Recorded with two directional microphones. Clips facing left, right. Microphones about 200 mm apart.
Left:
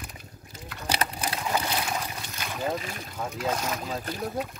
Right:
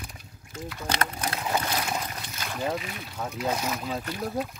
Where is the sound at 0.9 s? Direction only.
10° left (ahead or behind).